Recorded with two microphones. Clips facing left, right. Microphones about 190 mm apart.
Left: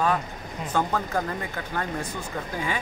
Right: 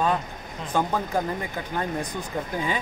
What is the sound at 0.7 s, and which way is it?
Speech, 15° right (ahead or behind).